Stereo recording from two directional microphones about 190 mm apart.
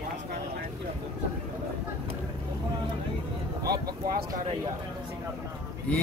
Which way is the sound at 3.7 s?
55° right (ahead or behind).